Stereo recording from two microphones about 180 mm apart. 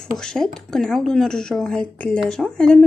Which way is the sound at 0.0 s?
5° left (ahead or behind).